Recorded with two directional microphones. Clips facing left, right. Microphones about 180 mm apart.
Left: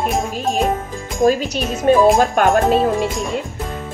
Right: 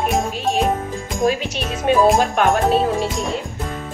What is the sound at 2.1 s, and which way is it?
Music, centre (ahead or behind).